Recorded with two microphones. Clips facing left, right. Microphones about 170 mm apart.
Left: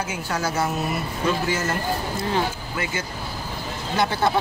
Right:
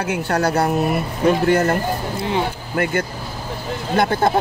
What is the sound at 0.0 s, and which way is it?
Speech, 65° right (ahead or behind).